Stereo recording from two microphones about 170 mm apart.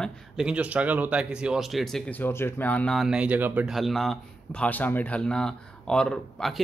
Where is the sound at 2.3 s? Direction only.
10° left (ahead or behind).